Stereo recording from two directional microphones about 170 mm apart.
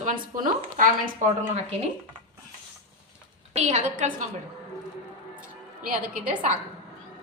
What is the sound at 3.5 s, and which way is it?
Speech, 40° right (ahead or behind).